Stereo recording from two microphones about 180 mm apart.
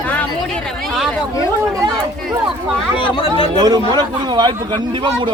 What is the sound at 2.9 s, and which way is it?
Speech, 30° left (ahead or behind).